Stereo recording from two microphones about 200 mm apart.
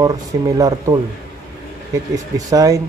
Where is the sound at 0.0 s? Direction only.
15° right (ahead or behind).